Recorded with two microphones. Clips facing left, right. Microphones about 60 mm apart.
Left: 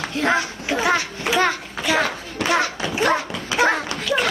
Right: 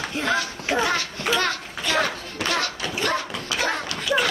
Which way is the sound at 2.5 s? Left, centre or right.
Centre.